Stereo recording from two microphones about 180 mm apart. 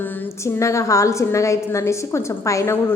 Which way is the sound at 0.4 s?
15° left (ahead or behind).